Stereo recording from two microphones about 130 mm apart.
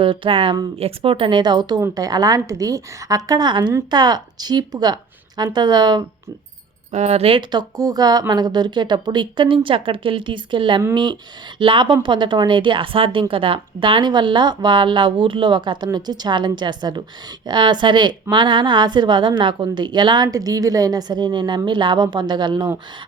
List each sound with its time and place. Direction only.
0.0 s a woman's voice: 40° right (ahead or behind)
6.9 s speech: 55° right (ahead or behind)
7.8 s a woman's voice: 30° right (ahead or behind)